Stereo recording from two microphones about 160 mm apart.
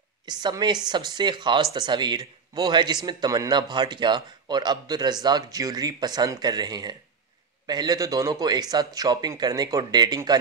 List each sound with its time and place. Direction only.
0.2 s speech: 25° right (ahead or behind)